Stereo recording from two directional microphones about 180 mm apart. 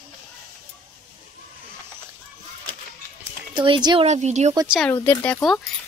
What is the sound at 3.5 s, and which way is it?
Speech, 25° right (ahead or behind).